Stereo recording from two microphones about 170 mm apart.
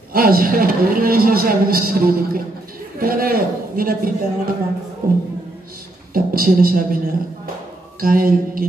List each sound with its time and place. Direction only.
0.1 s a man's voice: 60° right (ahead or behind)
6.1 s a man's voice: 60° right (ahead or behind)
8.0 s a man's voice: 55° right (ahead or behind)